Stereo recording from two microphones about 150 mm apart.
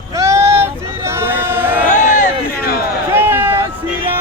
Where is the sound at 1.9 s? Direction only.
55° left (ahead or behind).